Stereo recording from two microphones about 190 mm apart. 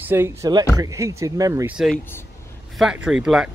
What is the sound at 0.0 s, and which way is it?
Speech, 10° right (ahead or behind).